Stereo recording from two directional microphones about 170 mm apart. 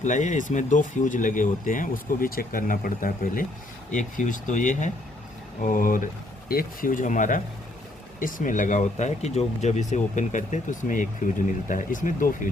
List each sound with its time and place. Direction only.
0.0 s speech: 45° left (ahead or behind)